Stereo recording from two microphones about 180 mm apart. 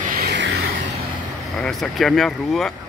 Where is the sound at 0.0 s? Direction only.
50° right (ahead or behind).